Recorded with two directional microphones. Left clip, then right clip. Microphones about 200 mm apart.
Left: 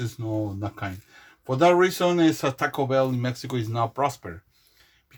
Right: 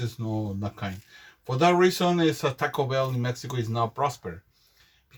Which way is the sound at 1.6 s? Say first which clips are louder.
Left 2 dB; 40° left (ahead or behind).